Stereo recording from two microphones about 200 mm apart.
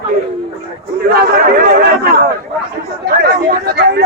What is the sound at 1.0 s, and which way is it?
Speech, 50° right (ahead or behind).